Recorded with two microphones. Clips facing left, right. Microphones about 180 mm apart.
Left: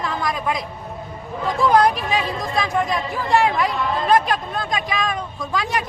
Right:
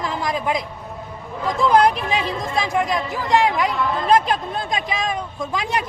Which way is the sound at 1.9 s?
25° right (ahead or behind).